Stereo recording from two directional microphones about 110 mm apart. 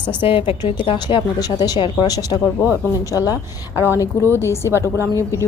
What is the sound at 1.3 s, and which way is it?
Speech, 40° left (ahead or behind).